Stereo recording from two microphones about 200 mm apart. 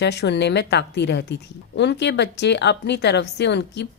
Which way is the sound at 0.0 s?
60° left (ahead or behind).